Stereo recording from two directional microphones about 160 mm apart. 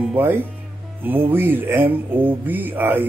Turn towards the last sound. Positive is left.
turn(degrees=-10)  # may be behind; listen again after turning